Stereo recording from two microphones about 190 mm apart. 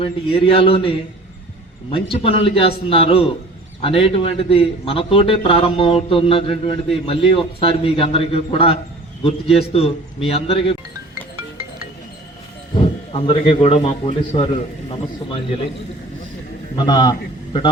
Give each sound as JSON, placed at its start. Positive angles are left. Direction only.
{"t": 0.0, "sound": "a man's voice", "side_deg": 30}
{"t": 12.7, "sound": "a man's voice", "side_deg": 30}
{"t": 16.7, "sound": "a man's voice", "side_deg": 20}